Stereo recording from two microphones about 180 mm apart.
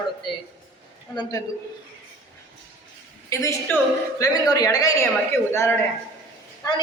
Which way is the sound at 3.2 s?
15° left (ahead or behind).